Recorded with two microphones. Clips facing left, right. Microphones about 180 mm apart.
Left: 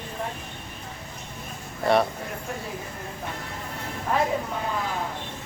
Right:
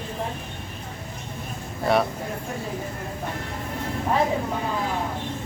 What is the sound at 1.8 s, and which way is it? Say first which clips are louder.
Speech: even; centre (ahead or behind).